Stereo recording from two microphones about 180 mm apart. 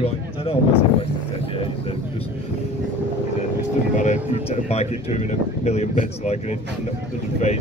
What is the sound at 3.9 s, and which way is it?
A man's voice, 40° left (ahead or behind).